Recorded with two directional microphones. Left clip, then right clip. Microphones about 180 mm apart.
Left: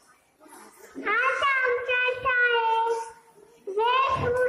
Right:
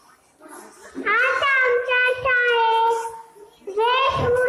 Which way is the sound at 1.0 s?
50° left (ahead or behind).